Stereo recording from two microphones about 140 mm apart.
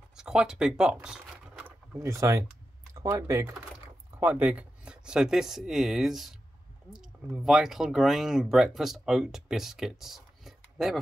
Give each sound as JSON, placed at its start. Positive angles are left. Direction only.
{"t": 0.2, "sound": "speech", "side_deg": -5}
{"t": 2.0, "sound": "speech", "side_deg": -20}
{"t": 4.1, "sound": "speech", "side_deg": -15}